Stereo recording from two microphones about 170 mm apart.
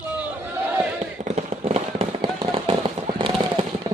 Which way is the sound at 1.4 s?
40° right (ahead or behind).